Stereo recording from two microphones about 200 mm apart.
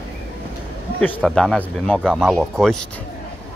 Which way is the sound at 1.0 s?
5° left (ahead or behind).